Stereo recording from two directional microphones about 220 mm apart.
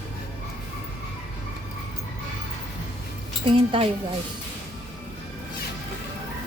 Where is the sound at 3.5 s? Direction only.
25° right (ahead or behind).